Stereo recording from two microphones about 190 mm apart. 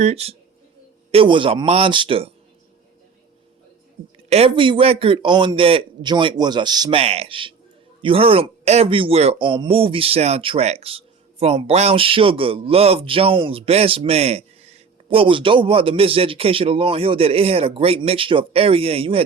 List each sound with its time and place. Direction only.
0.0 s a man's voice: 35° right (ahead or behind)
4.3 s a man's voice: 30° right (ahead or behind)